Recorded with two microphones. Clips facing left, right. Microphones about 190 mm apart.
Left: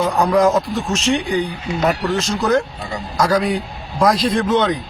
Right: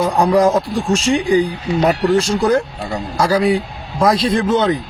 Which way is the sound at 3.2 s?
10° right (ahead or behind).